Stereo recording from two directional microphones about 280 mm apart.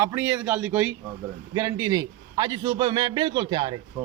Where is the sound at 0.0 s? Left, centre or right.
Centre.